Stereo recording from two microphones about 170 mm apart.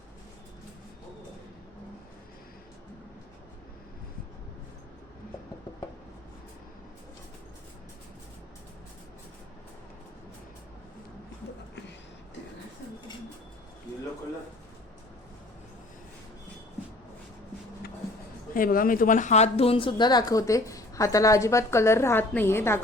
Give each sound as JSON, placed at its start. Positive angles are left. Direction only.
{"t": 18.5, "sound": "a woman's voice", "side_deg": 55}